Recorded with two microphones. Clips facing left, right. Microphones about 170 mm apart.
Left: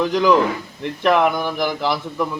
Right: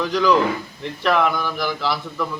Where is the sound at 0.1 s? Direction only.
20° left (ahead or behind).